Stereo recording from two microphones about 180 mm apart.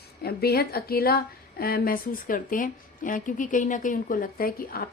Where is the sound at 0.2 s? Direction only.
60° left (ahead or behind).